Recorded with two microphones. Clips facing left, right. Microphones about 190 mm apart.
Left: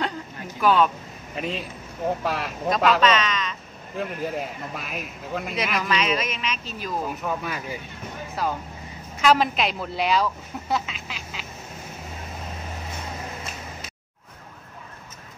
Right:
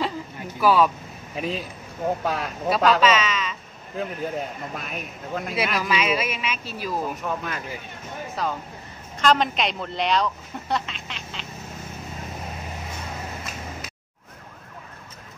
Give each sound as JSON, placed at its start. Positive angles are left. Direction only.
{"t": 0.6, "sound": "speech", "side_deg": -5}